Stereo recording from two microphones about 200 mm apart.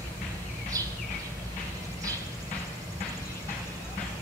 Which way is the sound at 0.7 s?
15° right (ahead or behind).